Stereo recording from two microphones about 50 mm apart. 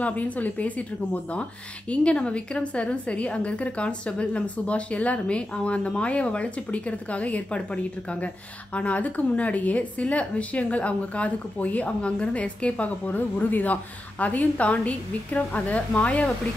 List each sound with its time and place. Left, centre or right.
0.0 s a woman's voice: left